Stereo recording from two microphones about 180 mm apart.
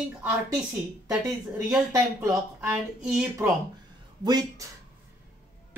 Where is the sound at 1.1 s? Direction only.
5° right (ahead or behind).